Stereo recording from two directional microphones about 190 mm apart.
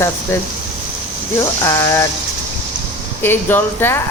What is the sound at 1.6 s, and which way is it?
Speech, 15° left (ahead or behind).